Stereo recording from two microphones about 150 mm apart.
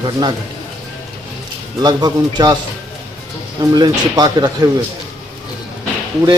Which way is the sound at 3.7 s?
25° right (ahead or behind).